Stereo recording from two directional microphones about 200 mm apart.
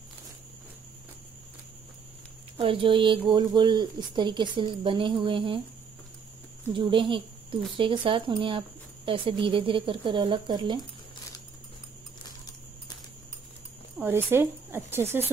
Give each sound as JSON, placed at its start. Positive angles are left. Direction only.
{"t": 2.5, "sound": "speech", "side_deg": -25}
{"t": 6.7, "sound": "speech", "side_deg": -25}
{"t": 13.9, "sound": "speech", "side_deg": -10}